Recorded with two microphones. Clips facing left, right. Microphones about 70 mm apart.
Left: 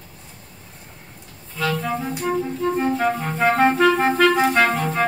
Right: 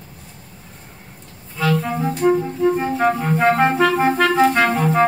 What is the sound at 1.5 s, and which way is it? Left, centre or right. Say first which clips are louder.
Music: right 4 dB; centre.